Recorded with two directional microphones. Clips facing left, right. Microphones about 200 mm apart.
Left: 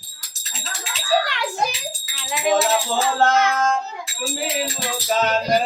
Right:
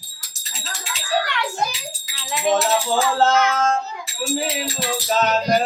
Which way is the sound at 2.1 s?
5° left (ahead or behind).